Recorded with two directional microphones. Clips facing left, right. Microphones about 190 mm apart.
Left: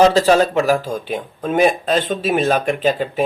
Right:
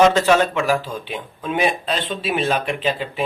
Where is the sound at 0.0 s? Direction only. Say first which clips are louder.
Left 2 dB; 35° left (ahead or behind).